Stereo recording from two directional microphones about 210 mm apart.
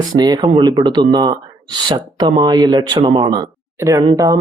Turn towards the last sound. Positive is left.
turn(degrees=-20)  # may be behind; listen again after turning